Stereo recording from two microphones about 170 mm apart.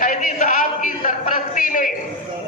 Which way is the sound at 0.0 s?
50° left (ahead or behind).